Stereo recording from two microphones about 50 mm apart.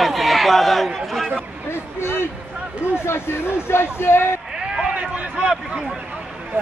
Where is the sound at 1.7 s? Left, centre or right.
Left.